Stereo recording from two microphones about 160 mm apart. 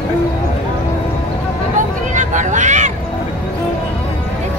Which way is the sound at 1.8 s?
50° right (ahead or behind).